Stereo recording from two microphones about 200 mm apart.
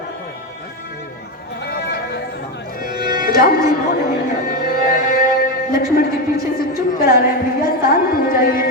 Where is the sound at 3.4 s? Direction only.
45° left (ahead or behind).